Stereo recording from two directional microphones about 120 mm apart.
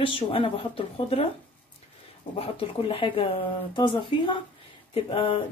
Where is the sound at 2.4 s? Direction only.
50° left (ahead or behind).